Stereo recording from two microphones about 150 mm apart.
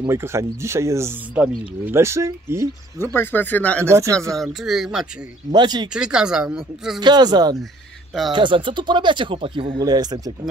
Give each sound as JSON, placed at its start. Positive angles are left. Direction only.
{"t": 0.1, "sound": "speech", "side_deg": -20}
{"t": 3.0, "sound": "speech", "side_deg": 15}
{"t": 3.8, "sound": "speech", "side_deg": -20}
{"t": 4.4, "sound": "speech", "side_deg": 0}
{"t": 5.5, "sound": "speech", "side_deg": -30}
{"t": 5.9, "sound": "speech", "side_deg": -5}
{"t": 7.0, "sound": "speech", "side_deg": -30}